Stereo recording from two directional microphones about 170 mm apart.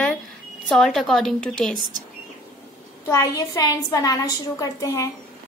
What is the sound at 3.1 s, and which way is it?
A woman's voice, 20° left (ahead or behind).